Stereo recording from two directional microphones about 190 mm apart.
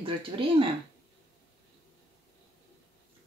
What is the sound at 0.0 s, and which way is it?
Speech, 30° right (ahead or behind).